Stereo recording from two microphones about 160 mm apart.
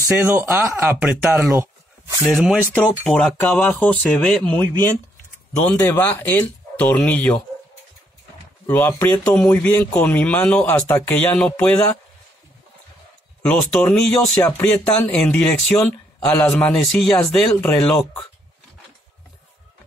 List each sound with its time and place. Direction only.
0.0 s speech: 15° right (ahead or behind)
1.6 s a sound: 20° right (ahead or behind)
2.2 s speech: centre (ahead or behind)
2.7 s speech: 10° left (ahead or behind)
5.8 s speech: 10° left (ahead or behind)
8.6 s speech: 15° left (ahead or behind)
13.4 s speech: 5° left (ahead or behind)